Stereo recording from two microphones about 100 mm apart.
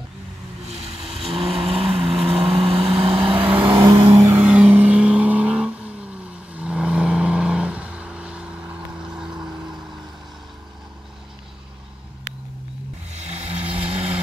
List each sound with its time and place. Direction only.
0.7 s vehicle: 90° right; by 3.4 s 70° right (ahead or behind)
3.4 s vehicle: 20° right (ahead or behind)
3.7 s vehicle: 35° right (ahead or behind)
4.4 s vehicle: 10° right (ahead or behind)